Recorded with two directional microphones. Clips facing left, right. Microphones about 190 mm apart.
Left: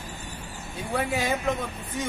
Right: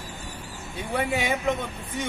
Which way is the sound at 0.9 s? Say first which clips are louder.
Right 1 dB; centre (ahead or behind).